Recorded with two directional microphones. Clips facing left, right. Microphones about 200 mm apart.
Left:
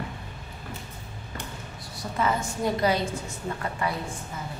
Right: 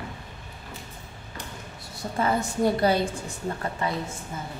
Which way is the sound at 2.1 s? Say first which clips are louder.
Right 2 dB; 35° right (ahead or behind).